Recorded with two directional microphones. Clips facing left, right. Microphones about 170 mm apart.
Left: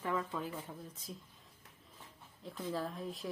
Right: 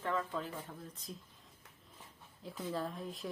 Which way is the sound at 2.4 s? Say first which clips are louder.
Even; centre (ahead or behind).